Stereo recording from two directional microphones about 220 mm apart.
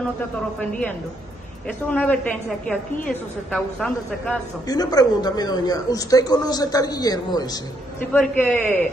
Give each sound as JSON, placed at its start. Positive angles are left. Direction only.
{"t": 0.6, "sound": "a woman's voice", "side_deg": 5}
{"t": 4.6, "sound": "speech", "side_deg": 15}
{"t": 8.1, "sound": "speech", "side_deg": 5}